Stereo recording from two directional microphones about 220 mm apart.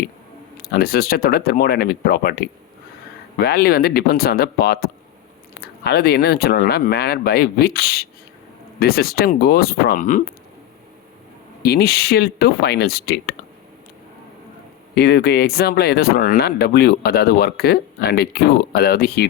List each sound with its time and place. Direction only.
0.5 s speech: 45° left (ahead or behind)
11.6 s speech: 45° left (ahead or behind)
14.9 s speech: 45° left (ahead or behind)